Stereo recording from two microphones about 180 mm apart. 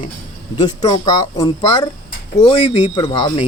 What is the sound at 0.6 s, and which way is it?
Music, 20° left (ahead or behind).